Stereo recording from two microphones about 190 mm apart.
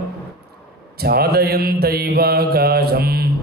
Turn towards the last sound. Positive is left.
turn(degrees=-55)  # may be behind; listen again after turning